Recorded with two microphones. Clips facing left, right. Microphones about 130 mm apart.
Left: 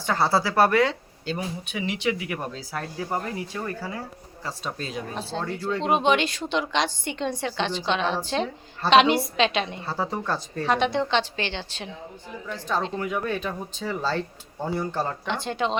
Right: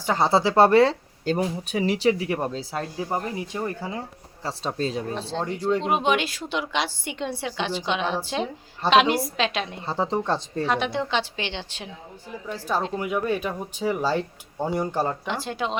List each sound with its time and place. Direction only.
0.0 s speech: 20° right (ahead or behind)
1.2 s speech: 45° right (ahead or behind); by 4.0 s 20° right (ahead or behind)
4.4 s speech: 30° right (ahead or behind)
5.1 s a woman's voice: 5° left (ahead or behind)
9.8 s speech: 20° right (ahead or behind)
10.7 s a woman's voice: centre (ahead or behind)
15.3 s speech: 5° right (ahead or behind)